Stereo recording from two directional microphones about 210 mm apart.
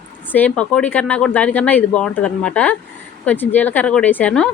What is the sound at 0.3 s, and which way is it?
Speech, 10° left (ahead or behind).